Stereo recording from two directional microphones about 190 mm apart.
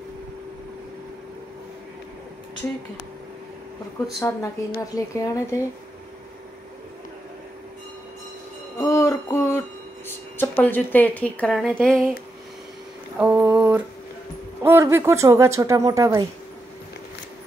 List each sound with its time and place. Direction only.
4.2 s speech: 15° left (ahead or behind)
8.7 s music: 15° left (ahead or behind)
10.0 s speech: 10° left (ahead or behind)
13.2 s a sound: 10° right (ahead or behind)
14.6 s speech: 10° right (ahead or behind)